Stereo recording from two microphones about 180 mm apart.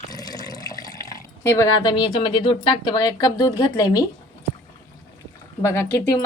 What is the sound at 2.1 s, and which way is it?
A woman's voice, 25° left (ahead or behind).